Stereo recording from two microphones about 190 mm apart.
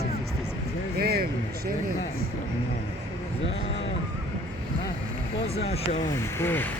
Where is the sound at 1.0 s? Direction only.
55° right (ahead or behind).